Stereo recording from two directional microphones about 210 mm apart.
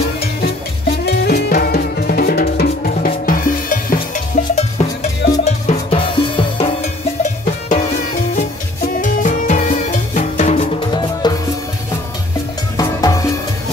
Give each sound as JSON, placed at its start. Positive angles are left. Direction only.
{"t": 1.0, "sound": "drum", "side_deg": 45}
{"t": 8.4, "sound": "music", "side_deg": 35}
{"t": 10.9, "sound": "music", "side_deg": 20}
{"t": 12.7, "sound": "music", "side_deg": 15}